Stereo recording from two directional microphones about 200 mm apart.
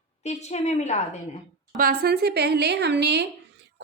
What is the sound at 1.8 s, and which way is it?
A woman's voice, 45° right (ahead or behind).